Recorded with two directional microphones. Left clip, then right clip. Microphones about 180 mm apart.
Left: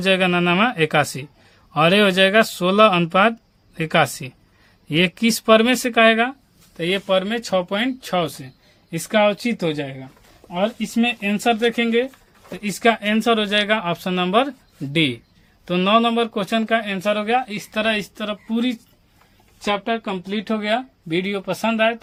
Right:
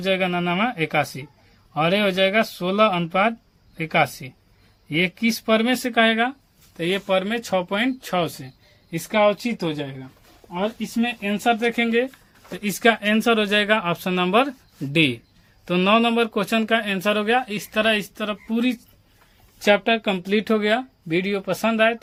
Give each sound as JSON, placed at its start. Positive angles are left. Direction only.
{"t": 0.0, "sound": "speech", "side_deg": 45}
{"t": 8.9, "sound": "speech", "side_deg": 25}
{"t": 11.3, "sound": "speech", "side_deg": 20}
{"t": 19.5, "sound": "speech", "side_deg": -35}
{"t": 20.6, "sound": "speech", "side_deg": -10}